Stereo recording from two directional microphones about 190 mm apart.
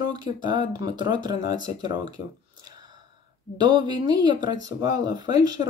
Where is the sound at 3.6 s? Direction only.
25° right (ahead or behind).